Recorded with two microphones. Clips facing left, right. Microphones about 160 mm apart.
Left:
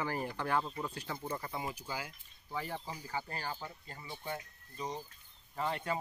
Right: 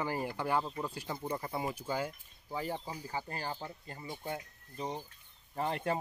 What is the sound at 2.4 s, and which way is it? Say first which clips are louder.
Speech: right 3 dB; 15° right (ahead or behind).